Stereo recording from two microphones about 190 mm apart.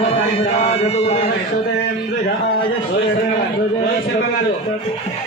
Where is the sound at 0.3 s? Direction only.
35° left (ahead or behind).